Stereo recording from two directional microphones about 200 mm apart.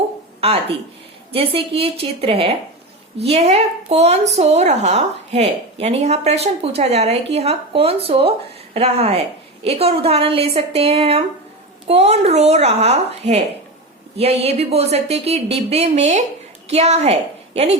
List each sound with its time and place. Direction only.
1.3 s a woman's voice: 30° right (ahead or behind)